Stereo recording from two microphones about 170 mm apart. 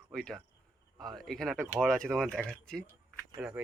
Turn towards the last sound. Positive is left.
turn(degrees=-5)  # may be behind; listen again after turning